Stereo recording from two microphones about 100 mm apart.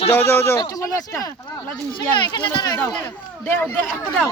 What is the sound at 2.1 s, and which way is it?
Speech, 50° left (ahead or behind).